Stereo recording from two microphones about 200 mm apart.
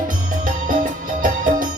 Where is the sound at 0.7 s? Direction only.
40° right (ahead or behind).